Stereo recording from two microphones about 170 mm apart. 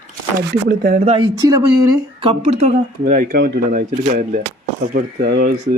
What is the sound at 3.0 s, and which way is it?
Speech, 55° right (ahead or behind).